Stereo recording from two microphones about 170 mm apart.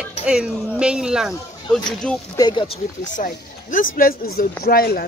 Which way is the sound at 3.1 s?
50° left (ahead or behind).